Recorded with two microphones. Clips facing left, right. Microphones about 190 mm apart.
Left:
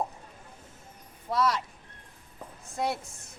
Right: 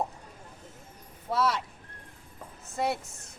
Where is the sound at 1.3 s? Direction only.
5° right (ahead or behind).